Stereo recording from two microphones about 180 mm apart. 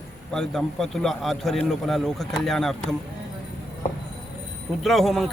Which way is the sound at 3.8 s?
45° left (ahead or behind).